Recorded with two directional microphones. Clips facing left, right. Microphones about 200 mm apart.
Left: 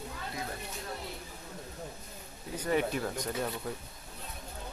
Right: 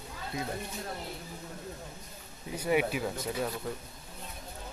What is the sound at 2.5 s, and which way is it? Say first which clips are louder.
Speech: right 2 dB; 10° right (ahead or behind).